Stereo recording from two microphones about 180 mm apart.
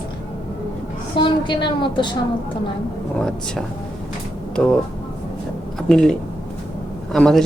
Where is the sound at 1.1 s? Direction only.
25° left (ahead or behind).